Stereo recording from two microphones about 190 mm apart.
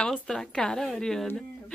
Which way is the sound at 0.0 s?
5° left (ahead or behind).